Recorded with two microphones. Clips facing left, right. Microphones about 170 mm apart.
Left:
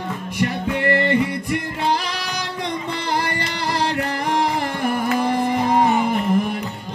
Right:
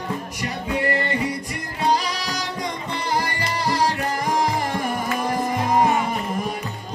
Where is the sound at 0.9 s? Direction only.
65° left (ahead or behind).